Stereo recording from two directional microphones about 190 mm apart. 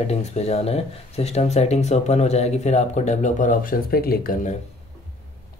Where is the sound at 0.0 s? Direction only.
35° left (ahead or behind).